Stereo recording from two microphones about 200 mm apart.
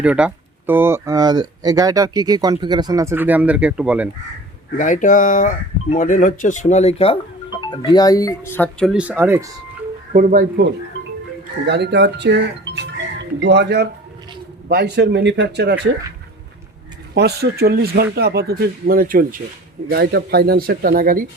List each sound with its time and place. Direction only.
0.0 s speech: 5° right (ahead or behind)
4.8 s speech: 40° left (ahead or behind)
7.9 s speech: 20° left (ahead or behind)
8.9 s speech: 5° right (ahead or behind)
10.1 s speech: 40° right (ahead or behind)
11.6 s speech: 55° right (ahead or behind)
17.2 s speech: 55° right (ahead or behind)